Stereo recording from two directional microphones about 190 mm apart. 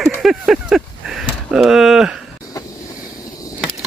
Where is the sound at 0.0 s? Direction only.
Centre (ahead or behind).